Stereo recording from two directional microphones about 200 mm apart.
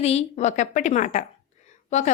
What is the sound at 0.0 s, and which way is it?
A woman's voice, 30° left (ahead or behind).